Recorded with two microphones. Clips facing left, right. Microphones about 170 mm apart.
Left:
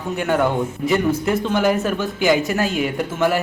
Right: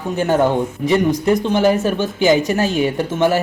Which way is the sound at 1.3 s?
25° right (ahead or behind).